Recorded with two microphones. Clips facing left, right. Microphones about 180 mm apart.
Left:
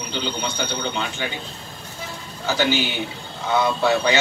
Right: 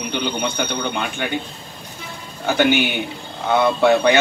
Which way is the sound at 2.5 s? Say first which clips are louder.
Right 4 dB; 55° right (ahead or behind).